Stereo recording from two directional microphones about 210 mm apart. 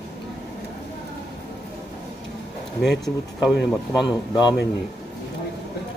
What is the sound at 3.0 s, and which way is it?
Speech, 5° right (ahead or behind).